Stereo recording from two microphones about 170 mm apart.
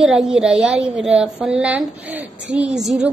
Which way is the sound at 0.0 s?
5° right (ahead or behind).